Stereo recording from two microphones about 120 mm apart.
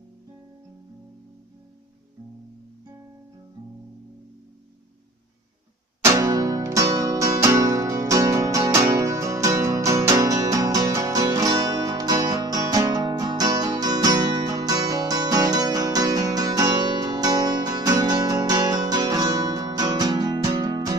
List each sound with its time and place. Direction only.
6.0 s music: 30° right (ahead or behind)